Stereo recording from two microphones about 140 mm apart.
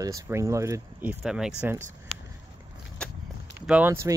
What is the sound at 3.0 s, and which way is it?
Walk, 5° left (ahead or behind).